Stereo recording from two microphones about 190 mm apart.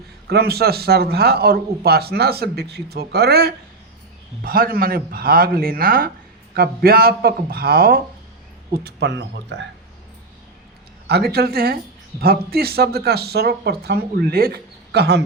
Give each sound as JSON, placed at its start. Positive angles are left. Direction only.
{"t": 0.3, "sound": "a man's voice", "side_deg": -55}
{"t": 11.1, "sound": "a man's voice", "side_deg": -55}